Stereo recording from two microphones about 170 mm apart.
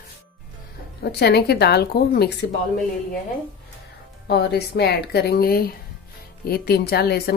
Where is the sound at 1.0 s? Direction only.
70° left (ahead or behind).